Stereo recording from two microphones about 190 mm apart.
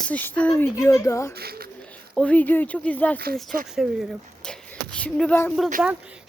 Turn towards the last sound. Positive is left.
turn(degrees=-5)  # may be behind; listen again after turning